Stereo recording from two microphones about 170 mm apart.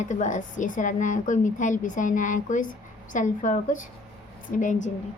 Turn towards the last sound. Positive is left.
turn(degrees=45)  # may be behind; listen again after turning